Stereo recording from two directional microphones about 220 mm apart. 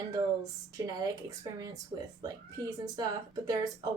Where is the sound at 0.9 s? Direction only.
15° right (ahead or behind).